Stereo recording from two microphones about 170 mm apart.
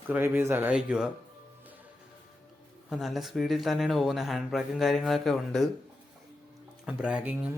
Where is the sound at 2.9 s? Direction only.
Centre (ahead or behind).